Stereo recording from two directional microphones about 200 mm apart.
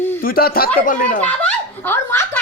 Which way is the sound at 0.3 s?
50° left (ahead or behind).